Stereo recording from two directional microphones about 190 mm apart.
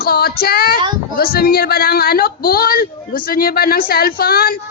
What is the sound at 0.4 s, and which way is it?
Speech, 55° left (ahead or behind).